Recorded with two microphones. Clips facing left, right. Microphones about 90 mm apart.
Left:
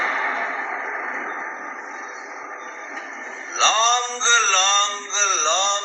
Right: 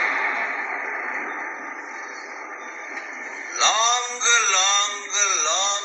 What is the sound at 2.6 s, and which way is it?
Music, 35° left (ahead or behind).